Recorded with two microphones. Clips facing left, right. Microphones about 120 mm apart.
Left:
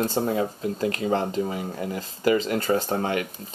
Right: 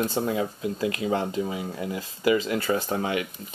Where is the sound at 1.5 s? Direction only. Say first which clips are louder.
Left 1 dB; 40° left (ahead or behind).